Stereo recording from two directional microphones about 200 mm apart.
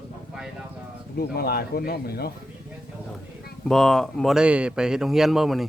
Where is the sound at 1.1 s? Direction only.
50° left (ahead or behind).